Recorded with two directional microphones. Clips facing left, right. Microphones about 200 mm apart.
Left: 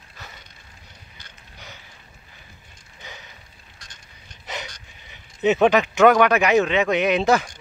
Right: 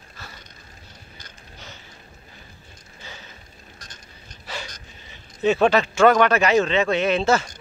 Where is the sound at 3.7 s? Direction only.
40° right (ahead or behind).